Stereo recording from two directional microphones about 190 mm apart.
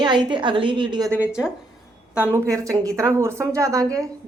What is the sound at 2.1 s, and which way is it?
Speech, 10° left (ahead or behind).